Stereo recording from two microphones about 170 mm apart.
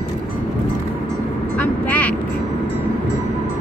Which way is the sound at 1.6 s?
10° left (ahead or behind).